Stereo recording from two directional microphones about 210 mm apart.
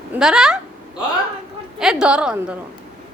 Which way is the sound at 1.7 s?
5° right (ahead or behind).